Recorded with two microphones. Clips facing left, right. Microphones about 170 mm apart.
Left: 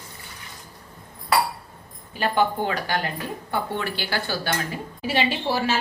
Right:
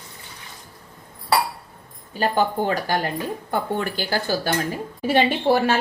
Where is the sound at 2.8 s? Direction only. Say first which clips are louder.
Right 3 dB; 45° right (ahead or behind).